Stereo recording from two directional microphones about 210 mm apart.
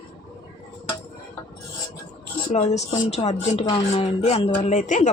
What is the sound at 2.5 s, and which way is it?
Speech, 35° left (ahead or behind).